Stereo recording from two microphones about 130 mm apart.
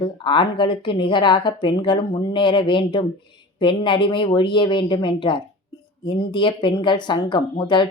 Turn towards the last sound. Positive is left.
turn(degrees=35)  # may be behind; listen again after turning